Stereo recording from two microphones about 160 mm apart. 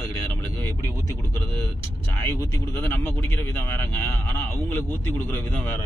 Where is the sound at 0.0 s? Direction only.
15° left (ahead or behind).